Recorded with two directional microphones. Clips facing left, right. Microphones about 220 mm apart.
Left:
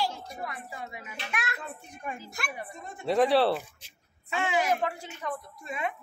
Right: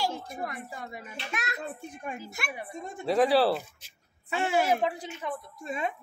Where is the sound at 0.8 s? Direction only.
35° right (ahead or behind).